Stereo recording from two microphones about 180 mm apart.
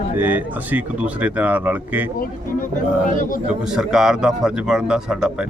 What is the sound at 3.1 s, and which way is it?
Speech, 50° left (ahead or behind).